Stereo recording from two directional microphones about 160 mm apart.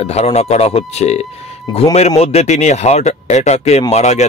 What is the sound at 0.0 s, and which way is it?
Speech, 40° left (ahead or behind).